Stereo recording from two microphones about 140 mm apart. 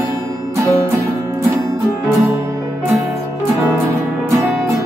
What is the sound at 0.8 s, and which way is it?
Music, 20° right (ahead or behind).